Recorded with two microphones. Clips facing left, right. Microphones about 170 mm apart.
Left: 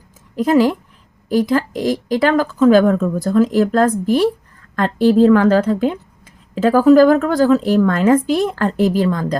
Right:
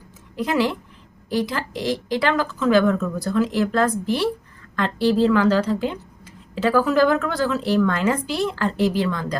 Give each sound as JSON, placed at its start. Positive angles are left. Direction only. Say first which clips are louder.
{"t": 0.3, "sound": "a woman's voice", "louder": "left 8 dB", "side_deg": 45}